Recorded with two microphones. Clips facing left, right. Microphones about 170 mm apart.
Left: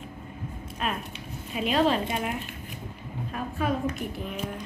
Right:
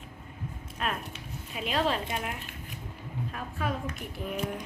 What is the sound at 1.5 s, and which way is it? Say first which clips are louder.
Speech: left 5 dB; 5° left (ahead or behind).